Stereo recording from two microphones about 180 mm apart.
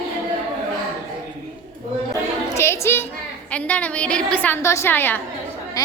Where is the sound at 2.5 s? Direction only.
15° left (ahead or behind).